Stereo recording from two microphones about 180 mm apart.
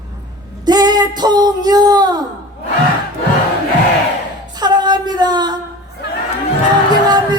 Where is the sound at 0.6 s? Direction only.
20° right (ahead or behind).